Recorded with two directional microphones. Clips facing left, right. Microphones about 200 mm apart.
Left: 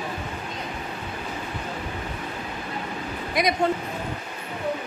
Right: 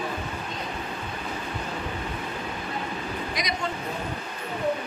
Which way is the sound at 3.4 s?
55° left (ahead or behind).